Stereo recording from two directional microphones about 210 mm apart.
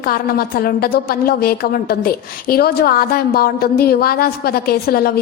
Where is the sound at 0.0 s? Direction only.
45° left (ahead or behind).